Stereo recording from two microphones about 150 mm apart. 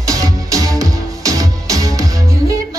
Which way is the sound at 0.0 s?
20° right (ahead or behind).